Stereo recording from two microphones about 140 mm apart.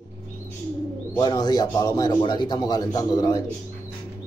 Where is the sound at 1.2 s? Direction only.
30° left (ahead or behind).